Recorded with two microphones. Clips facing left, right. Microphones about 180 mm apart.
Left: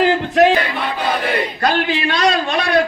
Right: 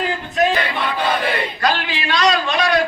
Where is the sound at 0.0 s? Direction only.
75° left (ahead or behind).